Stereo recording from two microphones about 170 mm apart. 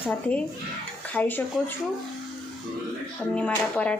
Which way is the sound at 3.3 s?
5° left (ahead or behind).